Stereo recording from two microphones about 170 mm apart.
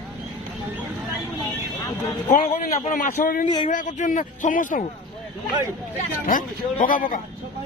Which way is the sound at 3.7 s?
50° left (ahead or behind).